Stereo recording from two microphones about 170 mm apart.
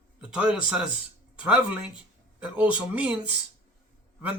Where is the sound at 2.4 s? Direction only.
10° right (ahead or behind).